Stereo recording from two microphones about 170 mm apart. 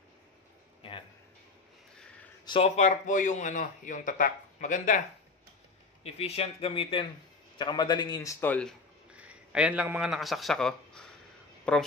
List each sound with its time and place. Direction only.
2.4 s a man's voice: 30° left (ahead or behind); by 5.0 s 50° left (ahead or behind)
6.0 s a man's voice: 40° left (ahead or behind); by 8.7 s 10° left (ahead or behind)
9.1 s a man's voice: 5° right (ahead or behind)